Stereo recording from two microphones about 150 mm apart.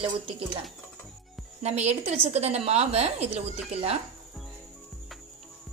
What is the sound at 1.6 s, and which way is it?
A woman's voice, 45° right (ahead or behind).